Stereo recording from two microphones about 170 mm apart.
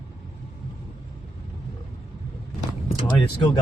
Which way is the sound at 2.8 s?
30° left (ahead or behind).